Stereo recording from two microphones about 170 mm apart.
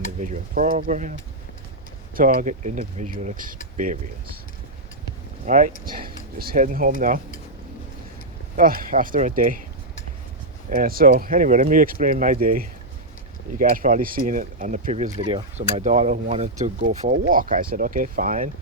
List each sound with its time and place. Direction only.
0.2 s speech: 50° right (ahead or behind)
2.1 s speech: 55° right (ahead or behind)
5.5 s speech: 55° right (ahead or behind)
8.5 s speech: 55° right (ahead or behind)
10.7 s speech: 55° right (ahead or behind)
14.9 s speech: 35° right (ahead or behind); by 18.5 s 50° right (ahead or behind)